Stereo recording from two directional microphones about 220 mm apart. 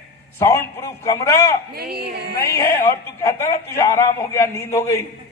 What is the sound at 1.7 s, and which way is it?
Speech, 45° right (ahead or behind).